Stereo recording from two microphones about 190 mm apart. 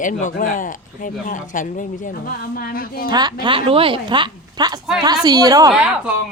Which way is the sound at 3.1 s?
20° right (ahead or behind).